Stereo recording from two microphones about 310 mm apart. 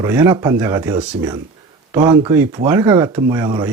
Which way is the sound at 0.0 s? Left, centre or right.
Centre.